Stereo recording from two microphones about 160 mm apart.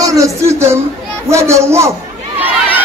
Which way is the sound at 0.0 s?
20° right (ahead or behind).